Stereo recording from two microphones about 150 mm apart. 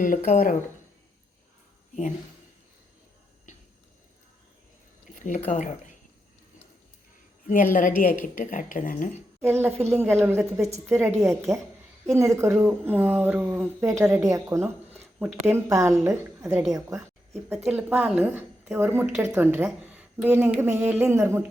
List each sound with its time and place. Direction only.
0.0 s speech: 65° left (ahead or behind)
5.1 s speech: 55° left (ahead or behind)
7.4 s speech: 65° left (ahead or behind)
9.4 s a woman's voice: 15° right (ahead or behind)
17.3 s a woman's voice: centre (ahead or behind)
17.7 s a woman's voice: 10° right (ahead or behind)